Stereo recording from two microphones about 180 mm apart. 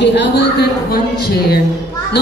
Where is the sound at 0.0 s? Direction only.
75° left (ahead or behind).